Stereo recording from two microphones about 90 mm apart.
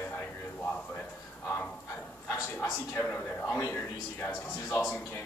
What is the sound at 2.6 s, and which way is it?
A man's voice, 20° left (ahead or behind).